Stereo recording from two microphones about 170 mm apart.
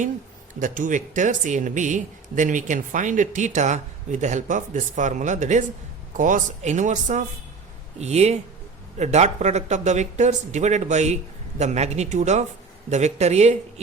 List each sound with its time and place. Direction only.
0.6 s speech: 50° right (ahead or behind)